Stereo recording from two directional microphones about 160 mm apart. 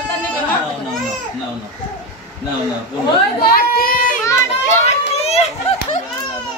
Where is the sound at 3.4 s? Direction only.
65° left (ahead or behind).